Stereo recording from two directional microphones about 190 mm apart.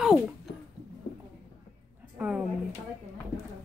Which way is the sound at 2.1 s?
5° right (ahead or behind).